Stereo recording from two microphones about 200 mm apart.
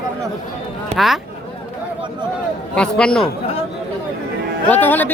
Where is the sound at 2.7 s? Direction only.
5° left (ahead or behind).